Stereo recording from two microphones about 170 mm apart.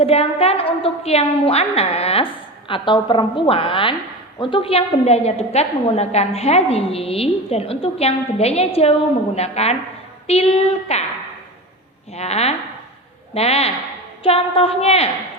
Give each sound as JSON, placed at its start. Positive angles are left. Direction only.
{"t": 0.0, "sound": "a woman's voice", "side_deg": 35}
{"t": 12.1, "sound": "a woman's voice", "side_deg": 40}